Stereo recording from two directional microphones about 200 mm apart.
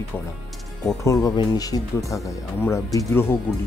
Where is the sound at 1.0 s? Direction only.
15° left (ahead or behind).